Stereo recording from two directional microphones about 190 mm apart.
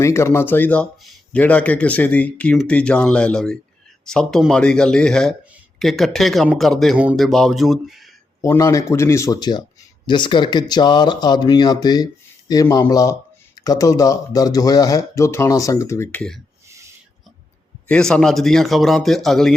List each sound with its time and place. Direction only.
0.0 s speech: 15° left (ahead or behind); by 8.0 s centre (ahead or behind)
8.4 s speech: 20° left (ahead or behind)
17.8 s speech: 5° left (ahead or behind)